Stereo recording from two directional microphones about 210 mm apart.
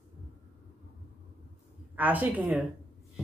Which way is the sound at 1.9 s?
10° right (ahead or behind).